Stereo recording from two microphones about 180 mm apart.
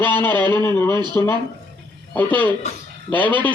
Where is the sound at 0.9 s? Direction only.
25° right (ahead or behind).